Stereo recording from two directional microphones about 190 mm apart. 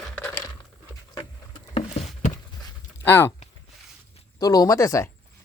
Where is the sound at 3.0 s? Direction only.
10° left (ahead or behind).